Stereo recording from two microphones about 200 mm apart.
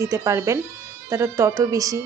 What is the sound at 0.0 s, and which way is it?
A woman's voice, 15° right (ahead or behind).